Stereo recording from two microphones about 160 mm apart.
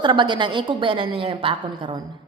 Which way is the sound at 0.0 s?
30° right (ahead or behind).